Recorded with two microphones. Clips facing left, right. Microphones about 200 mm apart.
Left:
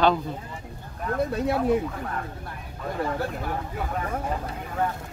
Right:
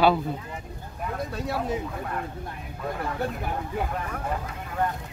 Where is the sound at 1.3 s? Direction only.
55° left (ahead or behind).